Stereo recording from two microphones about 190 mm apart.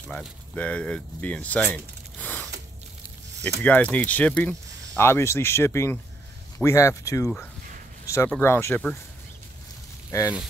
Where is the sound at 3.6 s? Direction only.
10° left (ahead or behind).